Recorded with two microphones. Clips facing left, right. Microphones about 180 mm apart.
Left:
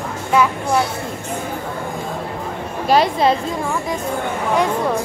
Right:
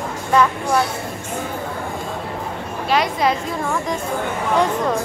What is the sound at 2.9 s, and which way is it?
Speech, 30° left (ahead or behind).